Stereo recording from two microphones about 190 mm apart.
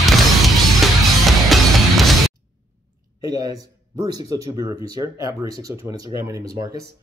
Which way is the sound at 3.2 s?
20° right (ahead or behind).